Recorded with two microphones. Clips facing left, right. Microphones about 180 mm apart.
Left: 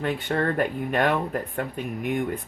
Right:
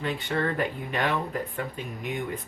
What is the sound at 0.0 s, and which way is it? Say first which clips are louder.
Speech: left 3 dB; 50° left (ahead or behind).